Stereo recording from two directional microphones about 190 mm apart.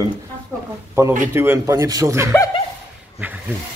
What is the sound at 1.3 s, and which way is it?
Speech, 10° right (ahead or behind).